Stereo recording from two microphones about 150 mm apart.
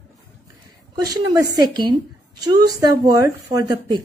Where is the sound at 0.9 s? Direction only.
25° right (ahead or behind).